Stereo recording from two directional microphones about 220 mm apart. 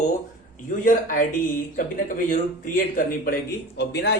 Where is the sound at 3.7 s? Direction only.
50° left (ahead or behind).